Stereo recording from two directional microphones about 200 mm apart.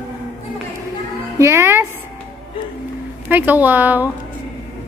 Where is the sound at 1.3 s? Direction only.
15° right (ahead or behind).